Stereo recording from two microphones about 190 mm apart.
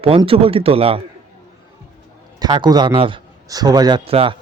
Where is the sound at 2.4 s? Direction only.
25° right (ahead or behind).